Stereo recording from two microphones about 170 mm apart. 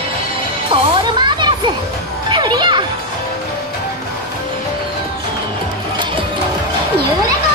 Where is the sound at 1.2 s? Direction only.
25° right (ahead or behind).